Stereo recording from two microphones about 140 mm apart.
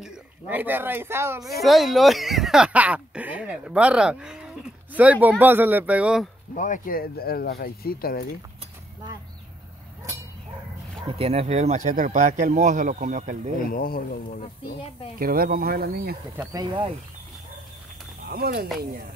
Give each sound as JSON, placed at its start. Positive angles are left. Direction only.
{"t": 0.0, "sound": "speech", "side_deg": -10}
{"t": 1.4, "sound": "speech", "side_deg": 0}
{"t": 6.5, "sound": "speech", "side_deg": 70}
{"t": 11.1, "sound": "speech", "side_deg": -45}
{"t": 11.9, "sound": "speech", "side_deg": -65}
{"t": 13.7, "sound": "speech", "side_deg": 90}
{"t": 14.4, "sound": "speech", "side_deg": 50}
{"t": 15.1, "sound": "speech", "side_deg": -90}
{"t": 16.5, "sound": "speech", "side_deg": -30}
{"t": 18.3, "sound": "speech", "side_deg": -90}